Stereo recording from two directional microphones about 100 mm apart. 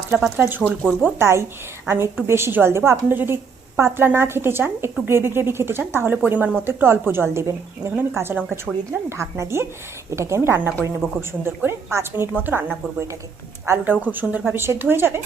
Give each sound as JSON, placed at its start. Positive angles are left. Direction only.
{"t": 0.1, "sound": "a woman's voice", "side_deg": -15}